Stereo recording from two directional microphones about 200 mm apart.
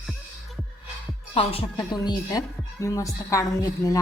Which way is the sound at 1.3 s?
25° left (ahead or behind).